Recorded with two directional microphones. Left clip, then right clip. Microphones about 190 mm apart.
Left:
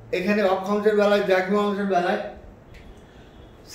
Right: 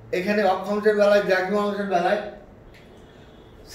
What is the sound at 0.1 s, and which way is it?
A man's voice, 15° left (ahead or behind).